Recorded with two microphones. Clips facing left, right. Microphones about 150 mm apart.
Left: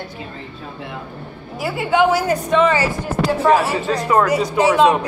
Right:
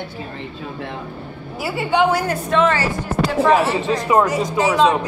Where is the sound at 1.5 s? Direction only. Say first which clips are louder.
Left 1 dB; centre (ahead or behind).